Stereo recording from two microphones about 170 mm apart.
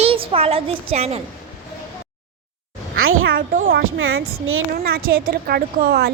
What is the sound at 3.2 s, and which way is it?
Speech, 55° right (ahead or behind).